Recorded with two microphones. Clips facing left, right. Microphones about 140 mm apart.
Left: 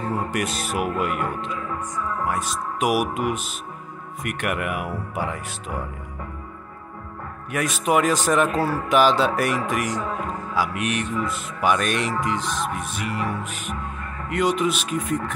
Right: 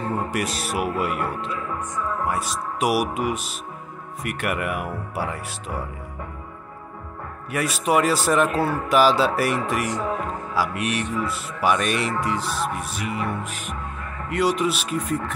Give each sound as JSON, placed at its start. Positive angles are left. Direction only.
{"t": 0.2, "sound": "music", "side_deg": -5}
{"t": 7.5, "sound": "music", "side_deg": 0}